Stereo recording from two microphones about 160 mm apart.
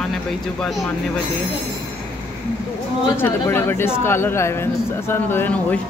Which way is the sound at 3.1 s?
15° left (ahead or behind).